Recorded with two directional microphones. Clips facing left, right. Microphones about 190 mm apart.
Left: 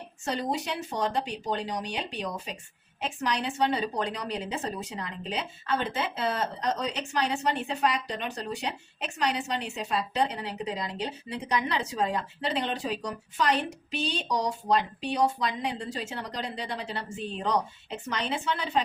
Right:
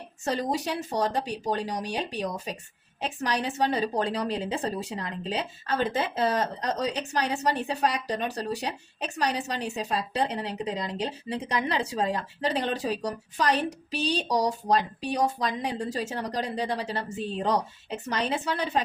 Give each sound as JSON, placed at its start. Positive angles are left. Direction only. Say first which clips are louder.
{"t": 0.3, "sound": "a woman's voice", "louder": "right 2 dB", "side_deg": -40}